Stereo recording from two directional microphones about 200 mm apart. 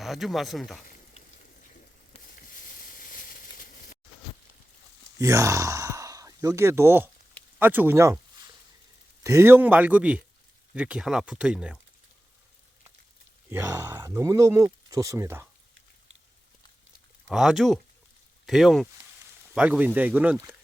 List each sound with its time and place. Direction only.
0.0 s speech: centre (ahead or behind)
2.1 s a sound: 30° left (ahead or behind)
2.6 s a sound: 45° left (ahead or behind)
5.2 s speech: 15° right (ahead or behind)
9.2 s speech: 15° right (ahead or behind)
13.5 s speech: 10° right (ahead or behind)
17.2 s speech: centre (ahead or behind)